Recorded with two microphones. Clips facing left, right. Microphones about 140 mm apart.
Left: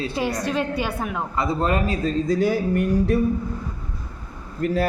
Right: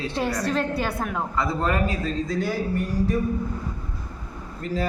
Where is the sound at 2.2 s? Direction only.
60° left (ahead or behind).